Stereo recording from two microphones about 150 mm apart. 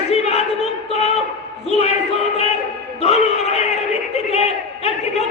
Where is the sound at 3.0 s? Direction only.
45° left (ahead or behind).